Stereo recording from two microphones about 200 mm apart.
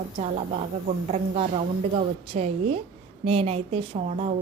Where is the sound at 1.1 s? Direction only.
30° right (ahead or behind).